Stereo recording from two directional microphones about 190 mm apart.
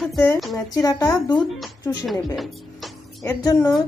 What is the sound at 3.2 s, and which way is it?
Music, 20° left (ahead or behind).